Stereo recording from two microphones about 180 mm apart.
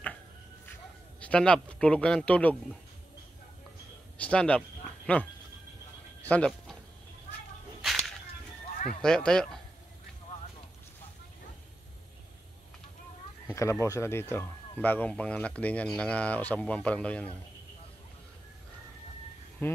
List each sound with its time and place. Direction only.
1.2 s speech: 5° left (ahead or behind)
4.2 s speech: 5° left (ahead or behind)
6.2 s sheep: 5° left (ahead or behind)
9.0 s speech: 5° left (ahead or behind)
13.5 s speech: 15° left (ahead or behind)
19.6 s speech: 15° left (ahead or behind)